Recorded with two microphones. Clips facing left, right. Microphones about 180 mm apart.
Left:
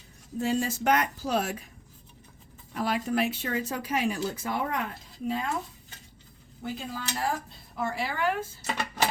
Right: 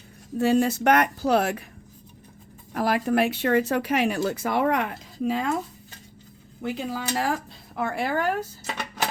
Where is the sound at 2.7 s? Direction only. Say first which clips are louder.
Right 5 dB; 60° right (ahead or behind); by 5.5 s 85° right.